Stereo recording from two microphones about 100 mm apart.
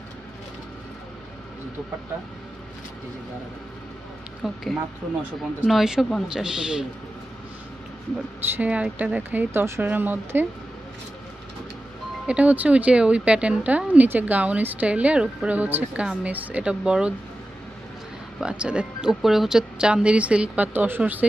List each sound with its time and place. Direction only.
4.4 s speech: 5° right (ahead or behind)
5.7 s speech: 5° right (ahead or behind)
8.5 s speech: 15° right (ahead or behind)
12.3 s speech: 15° right (ahead or behind)
18.4 s speech: 10° right (ahead or behind)